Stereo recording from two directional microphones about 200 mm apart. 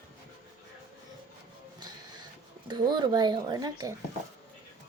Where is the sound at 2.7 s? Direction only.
20° right (ahead or behind).